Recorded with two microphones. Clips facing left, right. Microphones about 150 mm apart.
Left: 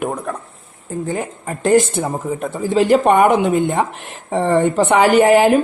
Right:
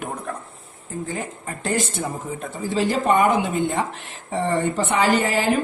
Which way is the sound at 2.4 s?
60° left (ahead or behind).